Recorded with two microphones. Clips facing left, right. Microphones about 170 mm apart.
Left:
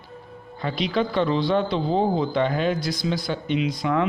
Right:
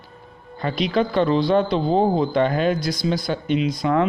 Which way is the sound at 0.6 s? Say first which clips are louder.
Right 3 dB; 45° right (ahead or behind).